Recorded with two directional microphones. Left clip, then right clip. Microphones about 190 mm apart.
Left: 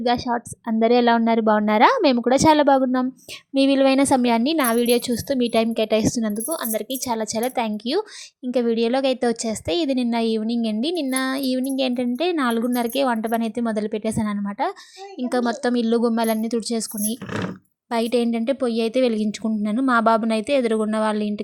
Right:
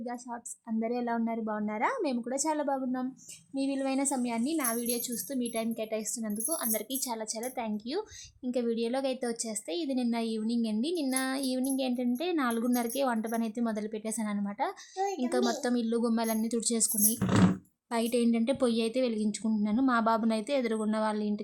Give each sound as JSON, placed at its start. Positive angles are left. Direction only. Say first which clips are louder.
{"t": 0.0, "sound": "speech", "louder": "left 18 dB", "side_deg": 35}